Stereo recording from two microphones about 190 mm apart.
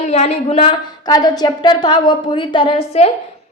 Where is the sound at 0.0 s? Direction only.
35° left (ahead or behind).